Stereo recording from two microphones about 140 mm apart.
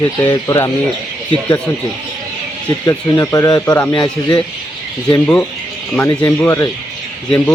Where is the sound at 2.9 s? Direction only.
25° left (ahead or behind).